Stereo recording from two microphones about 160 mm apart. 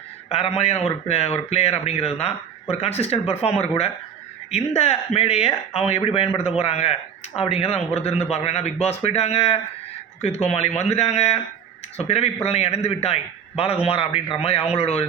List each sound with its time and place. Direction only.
0.3 s a man's voice: 40° left (ahead or behind)